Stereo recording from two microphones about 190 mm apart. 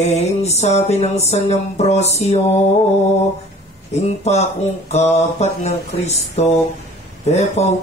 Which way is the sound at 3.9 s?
35° left (ahead or behind).